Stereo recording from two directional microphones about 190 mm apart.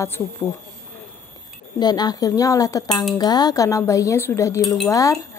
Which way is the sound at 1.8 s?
20° left (ahead or behind).